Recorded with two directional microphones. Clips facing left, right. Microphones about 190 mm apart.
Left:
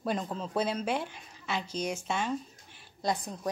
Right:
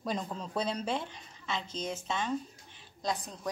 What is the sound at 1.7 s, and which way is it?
Speech, 25° right (ahead or behind).